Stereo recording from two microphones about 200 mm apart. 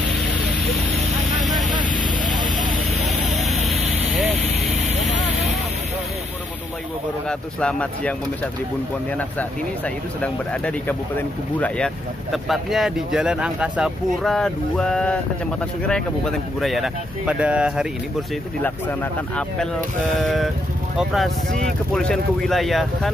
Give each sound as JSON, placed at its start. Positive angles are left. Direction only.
{"t": 1.7, "sound": "vehicle", "side_deg": -20}
{"t": 3.1, "sound": "vehicle", "side_deg": 0}
{"t": 7.2, "sound": "speech", "side_deg": 5}
{"t": 10.2, "sound": "speech", "side_deg": 5}
{"t": 18.6, "sound": "speech", "side_deg": 10}